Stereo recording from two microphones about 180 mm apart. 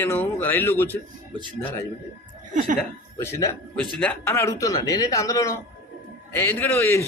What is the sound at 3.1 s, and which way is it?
A man's voice, 15° left (ahead or behind).